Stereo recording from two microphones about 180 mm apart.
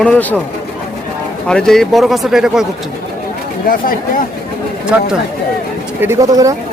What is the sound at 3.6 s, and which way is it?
Speech, 50° left (ahead or behind).